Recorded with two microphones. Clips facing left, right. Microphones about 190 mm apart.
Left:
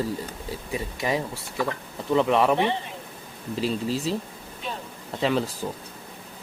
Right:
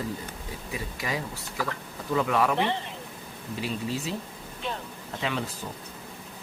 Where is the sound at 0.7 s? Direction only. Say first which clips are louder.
Left 6 dB; 25° left (ahead or behind).